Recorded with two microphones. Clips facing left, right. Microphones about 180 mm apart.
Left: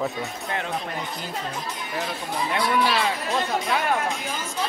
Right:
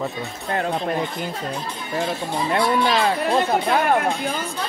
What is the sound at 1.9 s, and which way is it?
Speech, 30° right (ahead or behind).